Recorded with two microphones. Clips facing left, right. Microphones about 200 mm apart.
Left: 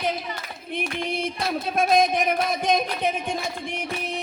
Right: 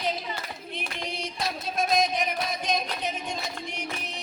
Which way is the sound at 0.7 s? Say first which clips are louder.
Left 9 dB; 55° left (ahead or behind).